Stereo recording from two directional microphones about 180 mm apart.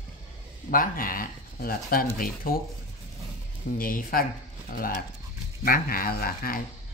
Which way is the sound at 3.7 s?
50° left (ahead or behind).